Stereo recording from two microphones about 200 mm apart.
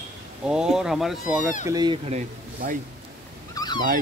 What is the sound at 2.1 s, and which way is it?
Speech, 35° right (ahead or behind).